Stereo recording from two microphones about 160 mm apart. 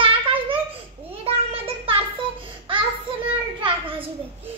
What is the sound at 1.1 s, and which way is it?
Child singing, 35° right (ahead or behind).